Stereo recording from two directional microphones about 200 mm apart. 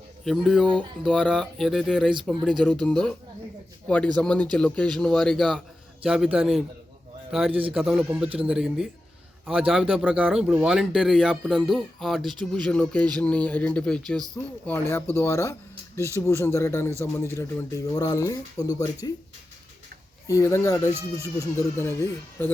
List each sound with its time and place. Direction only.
0.3 s a man's voice: centre (ahead or behind); by 19.2 s 20° left (ahead or behind)
20.2 s speech: 15° left (ahead or behind)